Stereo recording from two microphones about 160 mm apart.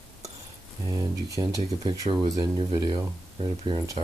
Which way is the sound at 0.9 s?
25° right (ahead or behind).